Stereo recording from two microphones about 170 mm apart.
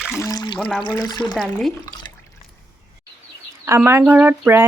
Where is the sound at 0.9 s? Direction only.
25° left (ahead or behind).